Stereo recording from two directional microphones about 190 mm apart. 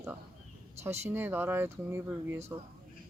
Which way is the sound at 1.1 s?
10° right (ahead or behind).